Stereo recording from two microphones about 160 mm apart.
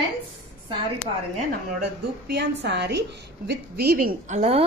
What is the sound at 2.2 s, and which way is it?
A woman's voice, 90° right.